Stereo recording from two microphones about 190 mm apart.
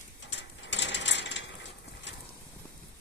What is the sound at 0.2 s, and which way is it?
Mechanisms, 70° left (ahead or behind).